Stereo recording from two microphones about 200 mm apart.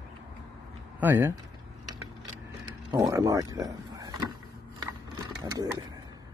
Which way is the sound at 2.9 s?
15° right (ahead or behind).